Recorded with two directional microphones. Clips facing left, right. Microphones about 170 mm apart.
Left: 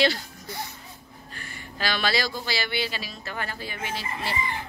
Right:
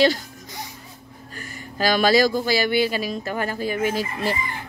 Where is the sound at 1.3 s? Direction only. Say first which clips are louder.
Right 5 dB; 45° right (ahead or behind).